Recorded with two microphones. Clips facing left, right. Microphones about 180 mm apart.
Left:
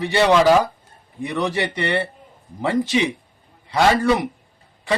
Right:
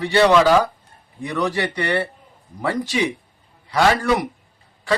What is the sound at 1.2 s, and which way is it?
Speech, 20° left (ahead or behind).